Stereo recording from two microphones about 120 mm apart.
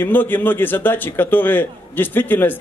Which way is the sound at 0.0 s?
15° left (ahead or behind).